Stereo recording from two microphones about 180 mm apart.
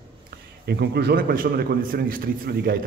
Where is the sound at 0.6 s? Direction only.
60° right (ahead or behind).